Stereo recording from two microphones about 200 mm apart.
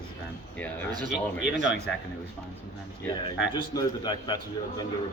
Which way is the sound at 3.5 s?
20° left (ahead or behind).